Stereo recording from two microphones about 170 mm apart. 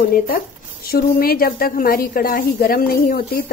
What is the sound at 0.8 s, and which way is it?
A woman's voice, 60° left (ahead or behind).